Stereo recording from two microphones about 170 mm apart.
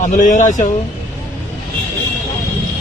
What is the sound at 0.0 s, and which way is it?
Speech, 50° left (ahead or behind).